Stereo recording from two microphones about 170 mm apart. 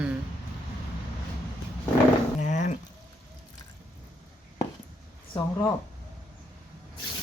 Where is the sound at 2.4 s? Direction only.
45° left (ahead or behind).